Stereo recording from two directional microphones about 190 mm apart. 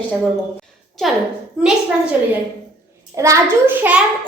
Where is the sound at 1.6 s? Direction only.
5° right (ahead or behind).